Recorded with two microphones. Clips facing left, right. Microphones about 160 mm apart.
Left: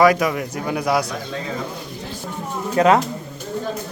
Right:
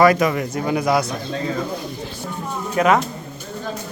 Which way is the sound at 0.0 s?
5° left (ahead or behind).